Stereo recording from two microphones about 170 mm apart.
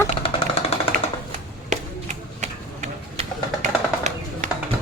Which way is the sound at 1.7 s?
45° right (ahead or behind).